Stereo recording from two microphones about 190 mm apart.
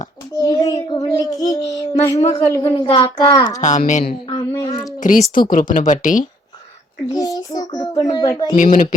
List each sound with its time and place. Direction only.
0.3 s child singing: 20° left (ahead or behind)
2.5 s a woman's voice: 15° left (ahead or behind)
2.9 s child singing: 25° left (ahead or behind)
3.6 s a woman's voice: 40° left (ahead or behind)
4.3 s child singing: 20° left (ahead or behind)
4.9 s speech: 45° left (ahead or behind)
7.1 s a child's voice: 20° left (ahead or behind)
8.5 s speech: 40° left (ahead or behind)